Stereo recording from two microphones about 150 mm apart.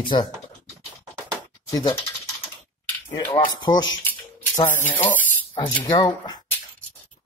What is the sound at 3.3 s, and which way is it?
Speech, 30° left (ahead or behind).